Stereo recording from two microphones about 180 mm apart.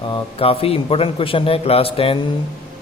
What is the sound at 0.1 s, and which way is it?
Speech, 30° left (ahead or behind).